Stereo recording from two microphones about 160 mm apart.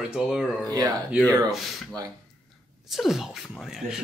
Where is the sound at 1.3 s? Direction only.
20° right (ahead or behind).